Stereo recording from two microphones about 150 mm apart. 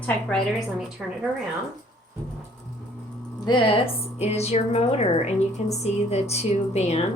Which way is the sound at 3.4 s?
35° left (ahead or behind).